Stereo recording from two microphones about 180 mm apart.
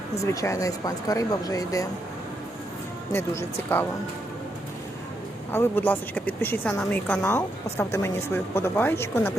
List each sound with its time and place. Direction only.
0.2 s speech: 15° left (ahead or behind)
3.1 s a woman's voice: 15° left (ahead or behind)
5.5 s a woman's voice: 10° left (ahead or behind)